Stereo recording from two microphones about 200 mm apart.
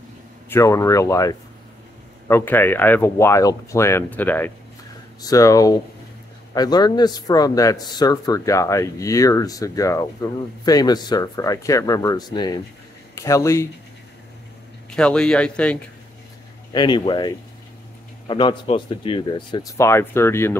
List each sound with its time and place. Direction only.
0.5 s a man's voice: 15° left (ahead or behind)
14.9 s a man's voice: 5° left (ahead or behind)
16.7 s speech: 20° left (ahead or behind)